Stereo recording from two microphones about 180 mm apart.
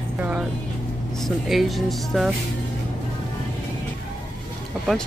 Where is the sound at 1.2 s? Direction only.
Centre (ahead or behind).